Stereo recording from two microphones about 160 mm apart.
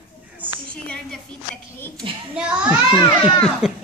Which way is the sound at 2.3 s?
10° right (ahead or behind).